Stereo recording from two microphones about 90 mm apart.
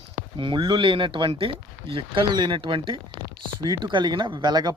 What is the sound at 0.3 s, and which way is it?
Speech, 65° right (ahead or behind).